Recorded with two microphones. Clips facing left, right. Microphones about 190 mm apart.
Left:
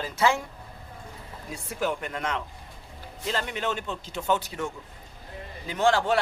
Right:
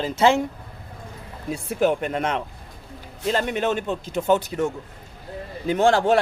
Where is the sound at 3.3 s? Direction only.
50° right (ahead or behind).